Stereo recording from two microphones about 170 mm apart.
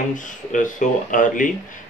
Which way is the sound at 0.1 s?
50° left (ahead or behind).